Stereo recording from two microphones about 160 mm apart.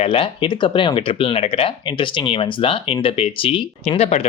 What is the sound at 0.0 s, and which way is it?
Speech, 35° left (ahead or behind).